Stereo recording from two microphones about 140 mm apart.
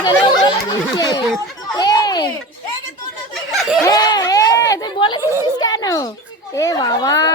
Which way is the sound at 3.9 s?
25° left (ahead or behind).